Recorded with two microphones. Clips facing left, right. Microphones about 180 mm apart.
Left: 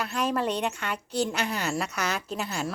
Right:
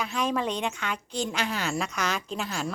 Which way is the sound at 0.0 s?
5° left (ahead or behind).